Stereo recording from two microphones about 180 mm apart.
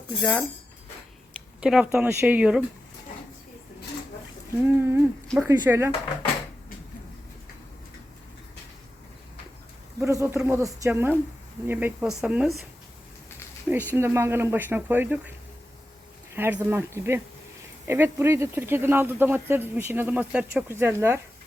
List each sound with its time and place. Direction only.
0.2 s speech: 5° left (ahead or behind)
1.6 s speech: 5° right (ahead or behind)
4.5 s speech: 10° right (ahead or behind)
10.0 s speech: 15° right (ahead or behind)
13.7 s speech: 10° right (ahead or behind)
16.3 s speech: 10° right (ahead or behind)